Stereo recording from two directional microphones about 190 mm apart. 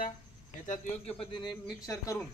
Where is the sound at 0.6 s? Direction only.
35° left (ahead or behind); by 2.2 s 15° left (ahead or behind).